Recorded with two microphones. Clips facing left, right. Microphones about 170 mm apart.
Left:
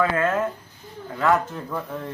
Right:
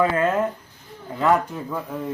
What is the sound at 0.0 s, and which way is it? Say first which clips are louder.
Speech: right 2 dB; 15° right (ahead or behind).